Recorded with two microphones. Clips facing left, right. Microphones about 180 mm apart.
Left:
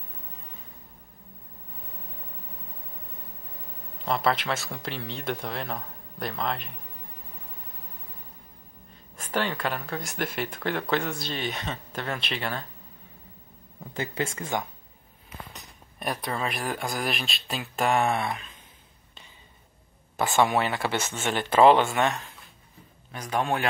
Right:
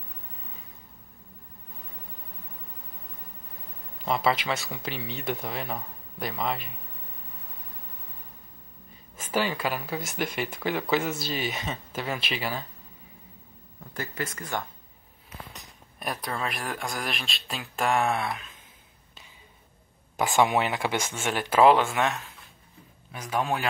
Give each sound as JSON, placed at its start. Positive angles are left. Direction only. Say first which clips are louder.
{"t": 4.0, "sound": "speech", "louder": "even", "side_deg": 0}
{"t": 9.1, "sound": "speech", "louder": "right 1 dB", "side_deg": -5}
{"t": 13.9, "sound": "speech", "louder": "left 4 dB", "side_deg": 25}
{"t": 15.2, "sound": "speech", "louder": "left 1 dB", "side_deg": 0}
{"t": 20.2, "sound": "speech", "louder": "even", "side_deg": -15}